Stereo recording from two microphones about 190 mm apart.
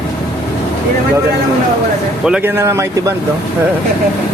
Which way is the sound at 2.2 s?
5° right (ahead or behind).